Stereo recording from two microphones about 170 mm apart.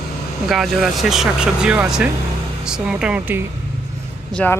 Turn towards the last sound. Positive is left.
turn(degrees=5)  # may be behind; listen again after turning